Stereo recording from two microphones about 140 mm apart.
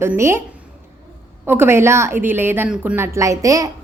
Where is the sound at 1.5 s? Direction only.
15° right (ahead or behind).